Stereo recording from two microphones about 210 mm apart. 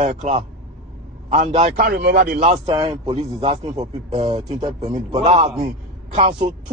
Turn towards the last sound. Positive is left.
turn(degrees=-30)  # may be behind; listen again after turning